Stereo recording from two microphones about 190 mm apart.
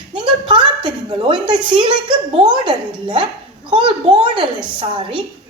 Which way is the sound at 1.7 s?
25° right (ahead or behind).